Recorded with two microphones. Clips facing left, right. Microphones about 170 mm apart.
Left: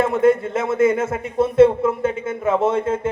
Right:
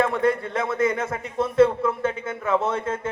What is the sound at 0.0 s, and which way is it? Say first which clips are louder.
A man's voice: left 5 dB; 25° left (ahead or behind).